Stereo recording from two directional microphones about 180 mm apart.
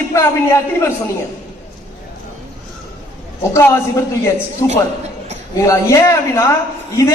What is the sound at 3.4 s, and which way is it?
A man's voice, 15° left (ahead or behind).